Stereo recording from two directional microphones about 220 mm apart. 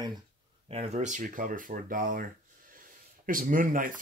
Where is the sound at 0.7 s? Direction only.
30° right (ahead or behind).